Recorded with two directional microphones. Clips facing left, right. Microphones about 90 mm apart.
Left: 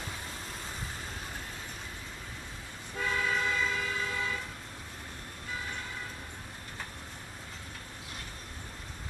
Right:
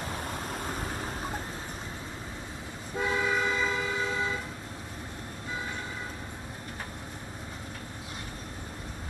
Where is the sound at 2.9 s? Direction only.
20° right (ahead or behind).